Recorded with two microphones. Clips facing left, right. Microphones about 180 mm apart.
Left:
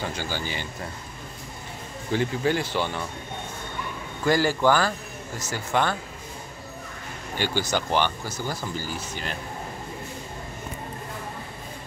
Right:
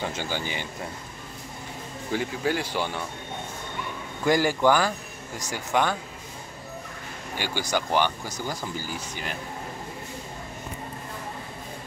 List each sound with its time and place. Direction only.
0.0 s speech: 20° right (ahead or behind)
2.1 s speech: 10° right (ahead or behind)
4.2 s speech: 15° right (ahead or behind)
7.3 s speech: 10° right (ahead or behind)